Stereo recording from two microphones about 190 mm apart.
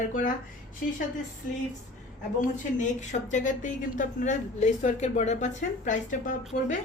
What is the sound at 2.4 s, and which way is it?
A woman's voice, 40° left (ahead or behind).